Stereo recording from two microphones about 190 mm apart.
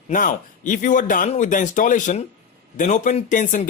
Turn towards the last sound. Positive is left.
turn(degrees=40)  # may be behind; listen again after turning